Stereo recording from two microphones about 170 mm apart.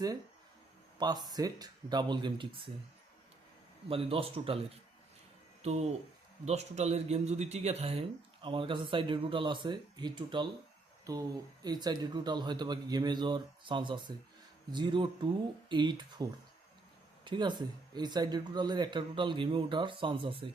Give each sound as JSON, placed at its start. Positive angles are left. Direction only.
{"t": 0.9, "sound": "speech", "side_deg": -25}
{"t": 3.8, "sound": "speech", "side_deg": -35}
{"t": 5.6, "sound": "speech", "side_deg": -40}